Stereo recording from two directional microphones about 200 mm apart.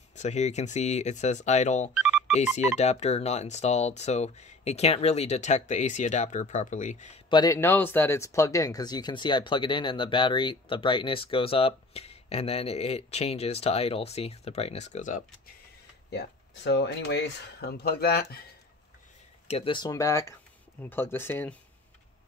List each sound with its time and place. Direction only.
0.1 s speech: 35° left (ahead or behind)
2.0 s music: 5° right (ahead or behind)
2.8 s speech: 35° left (ahead or behind)
7.2 s speech: 20° left (ahead or behind); by 15.2 s 40° left (ahead or behind)
16.6 s speech: 60° left (ahead or behind)
19.4 s speech: 30° left (ahead or behind); by 21.5 s 10° left (ahead or behind)